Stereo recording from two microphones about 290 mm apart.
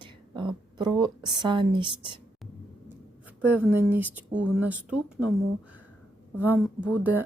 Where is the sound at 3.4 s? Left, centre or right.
Centre.